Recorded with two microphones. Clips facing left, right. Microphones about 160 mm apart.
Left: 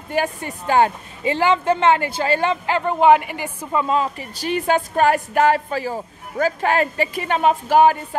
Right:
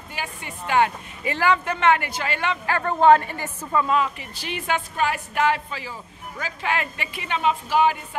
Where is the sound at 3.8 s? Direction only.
35° left (ahead or behind).